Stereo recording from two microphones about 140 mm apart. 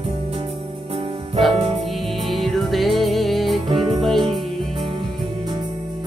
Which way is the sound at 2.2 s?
Centre (ahead or behind).